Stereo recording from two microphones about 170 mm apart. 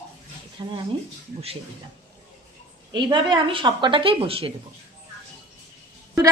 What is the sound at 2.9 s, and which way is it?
A woman's voice, 30° right (ahead or behind).